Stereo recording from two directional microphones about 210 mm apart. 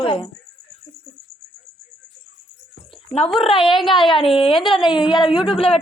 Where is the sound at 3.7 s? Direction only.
Centre (ahead or behind).